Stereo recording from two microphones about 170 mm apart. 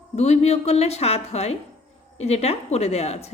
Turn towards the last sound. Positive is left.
turn(degrees=35)  # may be behind; listen again after turning